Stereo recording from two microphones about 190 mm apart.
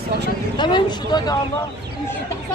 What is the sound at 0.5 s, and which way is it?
Speech, 25° left (ahead or behind).